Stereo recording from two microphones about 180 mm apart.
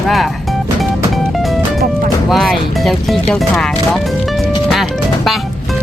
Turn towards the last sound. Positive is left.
turn(degrees=0)  # may be behind; listen again after turning